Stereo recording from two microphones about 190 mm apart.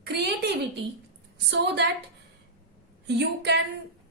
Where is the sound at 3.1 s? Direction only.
65° right (ahead or behind).